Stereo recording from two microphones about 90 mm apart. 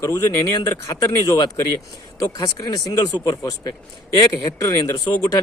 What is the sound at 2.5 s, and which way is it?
A man's voice, 40° left (ahead or behind).